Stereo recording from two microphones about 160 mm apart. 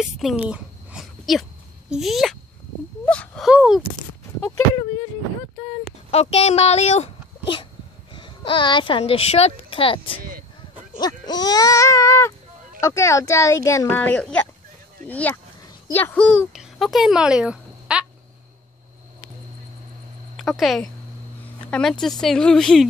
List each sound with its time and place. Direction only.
0.0 s a sound: centre (ahead or behind)
1.9 s a woman's voice: centre (ahead or behind)
3.1 s a sound: 5° left (ahead or behind)
3.4 s a woman's voice: 5° right (ahead or behind)
6.1 s a child's voice: 40° left (ahead or behind); by 18.0 s 5° right (ahead or behind)
20.3 s a woman's voice: centre (ahead or behind)